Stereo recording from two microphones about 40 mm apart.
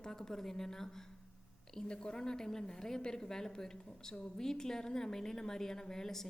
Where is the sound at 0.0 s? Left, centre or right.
Centre.